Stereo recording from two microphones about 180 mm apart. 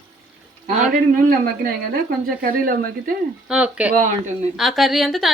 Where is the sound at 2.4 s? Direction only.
50° right (ahead or behind).